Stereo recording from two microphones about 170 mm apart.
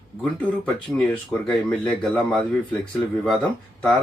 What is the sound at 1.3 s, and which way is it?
Speech, centre (ahead or behind).